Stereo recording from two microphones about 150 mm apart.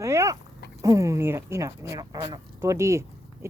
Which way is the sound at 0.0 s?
20° right (ahead or behind).